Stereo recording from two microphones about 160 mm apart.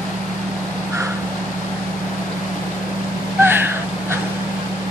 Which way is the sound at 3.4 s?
15° right (ahead or behind).